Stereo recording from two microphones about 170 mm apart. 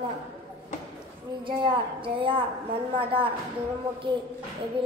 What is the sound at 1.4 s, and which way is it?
A woman's voice, 30° right (ahead or behind).